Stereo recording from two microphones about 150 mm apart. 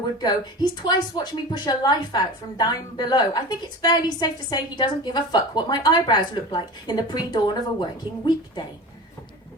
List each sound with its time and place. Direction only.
0.2 s a woman's voice: 30° left (ahead or behind)